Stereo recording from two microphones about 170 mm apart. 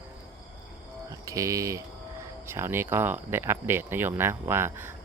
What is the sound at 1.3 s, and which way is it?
Speech, 20° right (ahead or behind).